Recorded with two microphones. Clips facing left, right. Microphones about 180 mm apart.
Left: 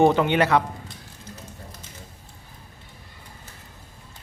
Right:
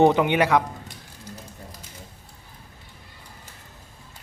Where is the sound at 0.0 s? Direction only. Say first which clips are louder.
Even; 15° right (ahead or behind).